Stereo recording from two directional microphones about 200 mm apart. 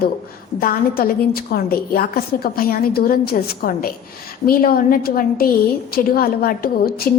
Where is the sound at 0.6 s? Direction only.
45° left (ahead or behind).